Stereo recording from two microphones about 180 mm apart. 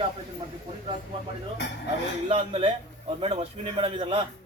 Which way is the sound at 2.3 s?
35° right (ahead or behind).